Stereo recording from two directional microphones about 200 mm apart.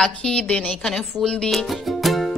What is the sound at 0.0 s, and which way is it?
Music, 5° left (ahead or behind).